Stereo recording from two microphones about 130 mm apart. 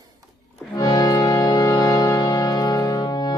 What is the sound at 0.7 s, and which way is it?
Music, 30° left (ahead or behind).